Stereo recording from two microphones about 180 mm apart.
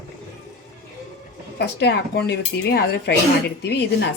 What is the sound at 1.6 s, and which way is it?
A woman's voice, 70° left (ahead or behind).